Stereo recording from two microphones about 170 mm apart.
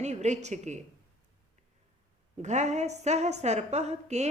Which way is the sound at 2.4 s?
45° right (ahead or behind).